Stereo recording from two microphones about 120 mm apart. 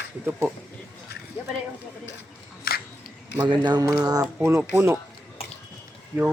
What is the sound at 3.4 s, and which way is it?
Mantra, 35° right (ahead or behind).